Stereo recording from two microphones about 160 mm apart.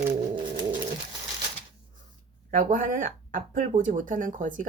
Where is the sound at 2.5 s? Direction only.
55° right (ahead or behind).